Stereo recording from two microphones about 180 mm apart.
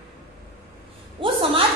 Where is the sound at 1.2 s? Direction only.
30° right (ahead or behind).